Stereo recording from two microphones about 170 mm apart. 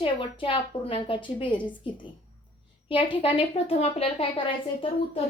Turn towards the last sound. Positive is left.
turn(degrees=35)  # may be behind; listen again after turning